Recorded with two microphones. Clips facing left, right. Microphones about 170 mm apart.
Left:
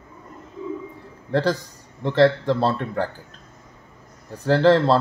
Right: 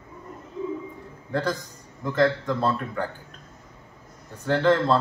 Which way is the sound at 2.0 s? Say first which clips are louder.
Left 5 dB; 30° left (ahead or behind).